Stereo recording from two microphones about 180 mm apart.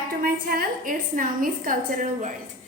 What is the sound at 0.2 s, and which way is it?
A woman's voice, 55° right (ahead or behind).